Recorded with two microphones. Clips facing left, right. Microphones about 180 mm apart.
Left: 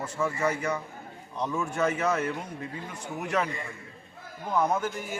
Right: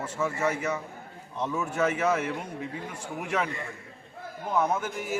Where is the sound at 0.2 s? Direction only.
5° right (ahead or behind).